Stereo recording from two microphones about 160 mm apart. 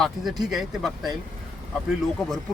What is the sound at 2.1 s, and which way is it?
Speech, 5° left (ahead or behind).